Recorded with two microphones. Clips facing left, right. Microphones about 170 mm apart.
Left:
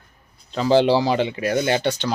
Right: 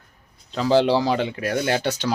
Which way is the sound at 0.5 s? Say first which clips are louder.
Left 2 dB; centre (ahead or behind).